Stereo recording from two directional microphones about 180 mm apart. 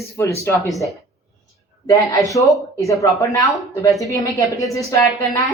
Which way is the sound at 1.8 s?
20° left (ahead or behind).